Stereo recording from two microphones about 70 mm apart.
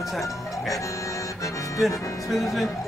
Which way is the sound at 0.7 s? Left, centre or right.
Left.